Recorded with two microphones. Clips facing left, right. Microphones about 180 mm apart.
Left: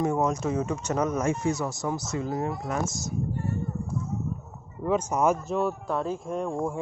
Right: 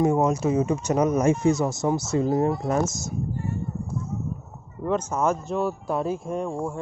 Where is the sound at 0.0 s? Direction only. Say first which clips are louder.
Right 4 dB; 15° right (ahead or behind); by 3.1 s 40° right (ahead or behind).